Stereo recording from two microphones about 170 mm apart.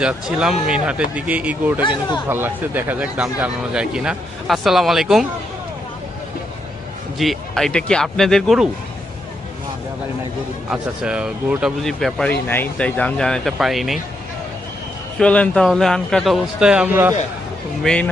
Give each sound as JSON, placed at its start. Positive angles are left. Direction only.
{"t": 0.0, "sound": "speech", "side_deg": -5}
{"t": 1.8, "sound": "speech", "side_deg": 25}
{"t": 2.3, "sound": "speech", "side_deg": -15}
{"t": 7.2, "sound": "speech", "side_deg": 0}
{"t": 10.7, "sound": "speech", "side_deg": -5}
{"t": 15.2, "sound": "speech", "side_deg": 5}
{"t": 17.8, "sound": "speech", "side_deg": 5}